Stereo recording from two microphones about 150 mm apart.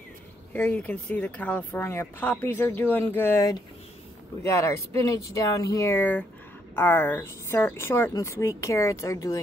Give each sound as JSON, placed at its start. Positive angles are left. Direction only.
{"t": 0.5, "sound": "speech", "side_deg": 10}